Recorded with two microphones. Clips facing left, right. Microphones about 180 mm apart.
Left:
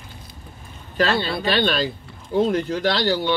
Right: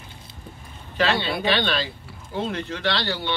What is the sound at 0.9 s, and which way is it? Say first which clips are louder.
Speech: left 2 dB; 40° left (ahead or behind).